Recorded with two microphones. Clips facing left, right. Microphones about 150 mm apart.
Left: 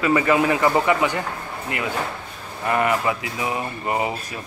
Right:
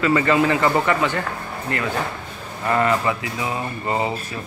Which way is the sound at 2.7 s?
15° left (ahead or behind).